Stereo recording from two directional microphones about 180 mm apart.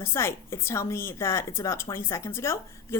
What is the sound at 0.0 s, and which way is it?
A woman's voice, 15° left (ahead or behind).